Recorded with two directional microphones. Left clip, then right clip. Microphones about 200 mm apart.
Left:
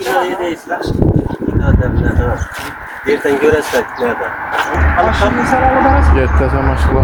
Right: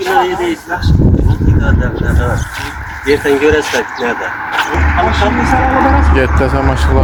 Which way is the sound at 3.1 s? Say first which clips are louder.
Right 1 dB; 50° left (ahead or behind).